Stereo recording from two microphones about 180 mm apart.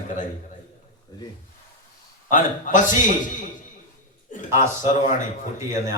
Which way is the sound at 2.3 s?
45° left (ahead or behind).